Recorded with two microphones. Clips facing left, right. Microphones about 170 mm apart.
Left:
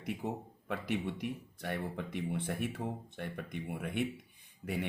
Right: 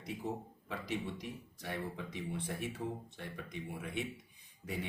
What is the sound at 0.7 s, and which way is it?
Speech, 60° left (ahead or behind).